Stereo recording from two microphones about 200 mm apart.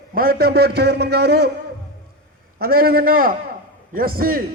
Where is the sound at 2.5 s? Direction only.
50° right (ahead or behind).